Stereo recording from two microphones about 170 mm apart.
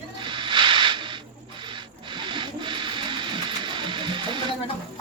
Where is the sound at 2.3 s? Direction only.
30° right (ahead or behind).